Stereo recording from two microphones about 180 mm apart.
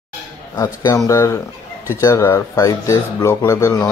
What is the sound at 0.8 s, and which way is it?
Speech, 20° left (ahead or behind).